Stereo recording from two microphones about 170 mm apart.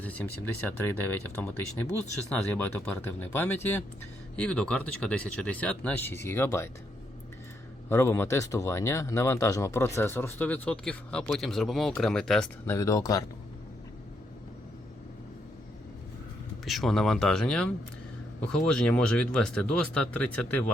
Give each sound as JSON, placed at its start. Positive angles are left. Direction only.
{"t": 0.0, "sound": "speech", "side_deg": 10}
{"t": 7.9, "sound": "speech", "side_deg": 15}
{"t": 12.6, "sound": "speech", "side_deg": 15}
{"t": 16.6, "sound": "speech", "side_deg": 0}